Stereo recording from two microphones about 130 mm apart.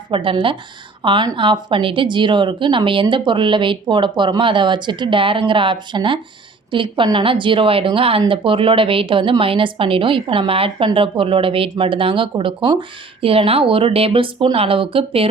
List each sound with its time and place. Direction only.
0.1 s a woman's voice: 40° right (ahead or behind)